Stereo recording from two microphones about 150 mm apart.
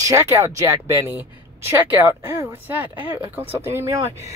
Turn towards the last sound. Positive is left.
turn(degrees=-20)  # may be behind; listen again after turning